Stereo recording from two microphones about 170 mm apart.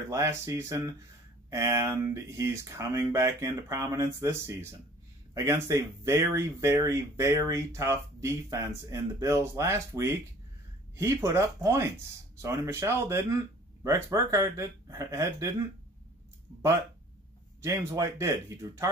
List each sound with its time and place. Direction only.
0.1 s speech: 15° right (ahead or behind)
17.6 s speech: 20° right (ahead or behind)